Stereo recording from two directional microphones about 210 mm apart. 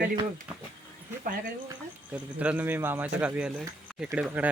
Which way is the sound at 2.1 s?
5° right (ahead or behind).